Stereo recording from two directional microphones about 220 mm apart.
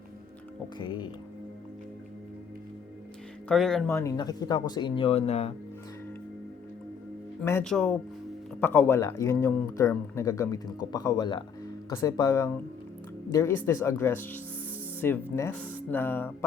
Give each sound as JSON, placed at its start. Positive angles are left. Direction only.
{"t": 0.8, "sound": "speech", "side_deg": 20}
{"t": 3.5, "sound": "speech", "side_deg": 0}
{"t": 3.9, "sound": "speech", "side_deg": 15}
{"t": 7.4, "sound": "speech", "side_deg": 5}